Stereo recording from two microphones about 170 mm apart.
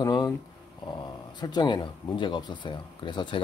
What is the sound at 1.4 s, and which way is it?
Speech, 25° left (ahead or behind).